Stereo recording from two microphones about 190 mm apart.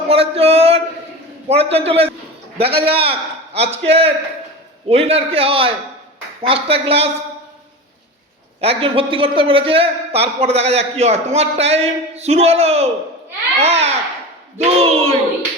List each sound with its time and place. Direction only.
0.1 s a sound: 30° right (ahead or behind)
1.5 s a man's voice: 30° right (ahead or behind)
8.6 s a man's voice: 30° right (ahead or behind)